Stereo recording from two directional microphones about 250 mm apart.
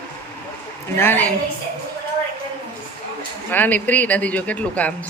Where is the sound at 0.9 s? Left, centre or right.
Centre.